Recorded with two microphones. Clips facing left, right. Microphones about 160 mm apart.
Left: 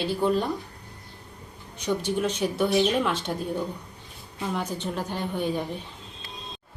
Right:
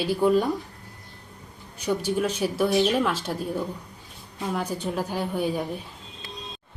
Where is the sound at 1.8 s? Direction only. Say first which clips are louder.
Right 1 dB; 5° right (ahead or behind).